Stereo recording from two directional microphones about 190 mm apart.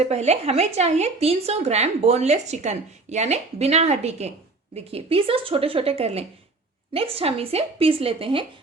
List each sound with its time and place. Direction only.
0.0 s a woman's voice: 35° right (ahead or behind)